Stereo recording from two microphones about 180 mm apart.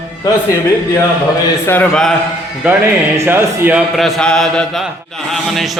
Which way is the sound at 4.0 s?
Centre (ahead or behind).